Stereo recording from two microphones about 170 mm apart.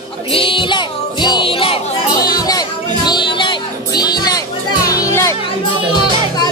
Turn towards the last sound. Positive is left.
turn(degrees=15)  # may be behind; listen again after turning